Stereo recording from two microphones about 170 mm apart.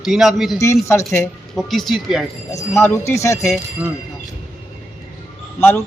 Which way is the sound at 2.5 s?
15° left (ahead or behind).